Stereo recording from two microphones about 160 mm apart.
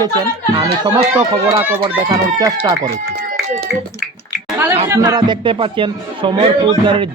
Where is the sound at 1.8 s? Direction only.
25° right (ahead or behind).